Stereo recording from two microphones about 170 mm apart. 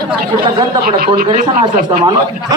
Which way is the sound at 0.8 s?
65° right (ahead or behind).